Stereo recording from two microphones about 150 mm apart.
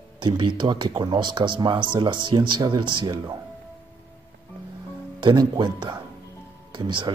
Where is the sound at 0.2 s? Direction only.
30° right (ahead or behind).